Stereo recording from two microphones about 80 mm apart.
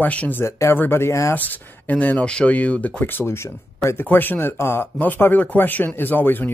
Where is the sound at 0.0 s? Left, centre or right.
Centre.